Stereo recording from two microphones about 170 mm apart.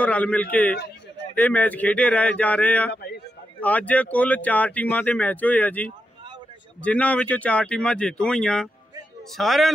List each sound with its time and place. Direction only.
0.0 s speech: 10° left (ahead or behind)
2.9 s a sound: 70° left (ahead or behind)
3.6 s speech: 10° left (ahead or behind)